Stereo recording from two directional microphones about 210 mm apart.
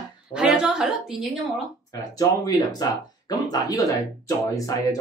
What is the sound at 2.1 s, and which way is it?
Speech, 20° left (ahead or behind).